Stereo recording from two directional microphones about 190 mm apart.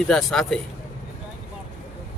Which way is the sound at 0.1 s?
Centre (ahead or behind).